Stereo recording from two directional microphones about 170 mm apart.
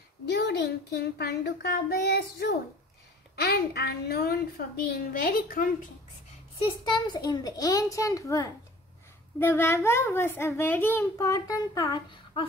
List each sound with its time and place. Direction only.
0.3 s a child's voice: 75° left (ahead or behind); by 5.9 s 55° left (ahead or behind)
6.6 s a child's voice: 25° left (ahead or behind)